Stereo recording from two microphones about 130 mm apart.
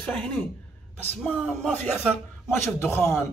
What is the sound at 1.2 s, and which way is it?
A man's voice, 5° left (ahead or behind).